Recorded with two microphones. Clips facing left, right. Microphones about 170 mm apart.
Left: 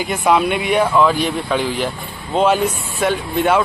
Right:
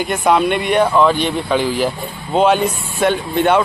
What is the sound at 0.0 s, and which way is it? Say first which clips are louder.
Speech: right 1 dB; centre (ahead or behind).